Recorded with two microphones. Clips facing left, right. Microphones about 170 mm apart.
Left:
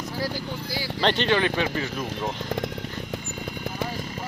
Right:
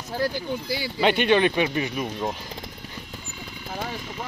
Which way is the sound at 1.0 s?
10° right (ahead or behind).